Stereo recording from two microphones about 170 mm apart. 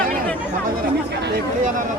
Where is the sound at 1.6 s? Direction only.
50° right (ahead or behind).